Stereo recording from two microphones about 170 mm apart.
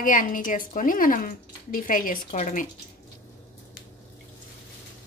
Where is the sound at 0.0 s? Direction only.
50° left (ahead or behind).